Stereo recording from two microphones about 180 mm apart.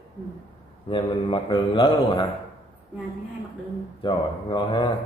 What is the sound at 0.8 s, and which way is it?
A man's voice, 25° left (ahead or behind).